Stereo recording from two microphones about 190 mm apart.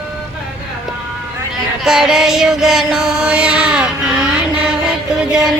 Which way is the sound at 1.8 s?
5° right (ahead or behind).